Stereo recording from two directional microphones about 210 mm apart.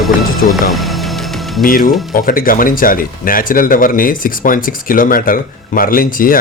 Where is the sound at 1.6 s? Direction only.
40° left (ahead or behind).